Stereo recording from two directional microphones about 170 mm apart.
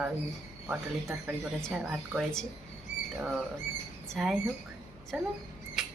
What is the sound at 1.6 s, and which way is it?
A woman's voice, centre (ahead or behind).